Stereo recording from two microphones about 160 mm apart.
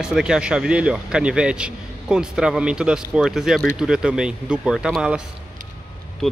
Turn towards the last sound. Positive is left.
turn(degrees=0)  # may be behind; listen again after turning